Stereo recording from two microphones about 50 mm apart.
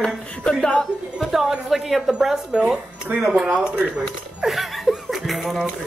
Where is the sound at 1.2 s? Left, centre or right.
Centre.